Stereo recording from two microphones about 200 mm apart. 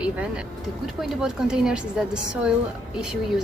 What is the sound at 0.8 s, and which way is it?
Speech, centre (ahead or behind).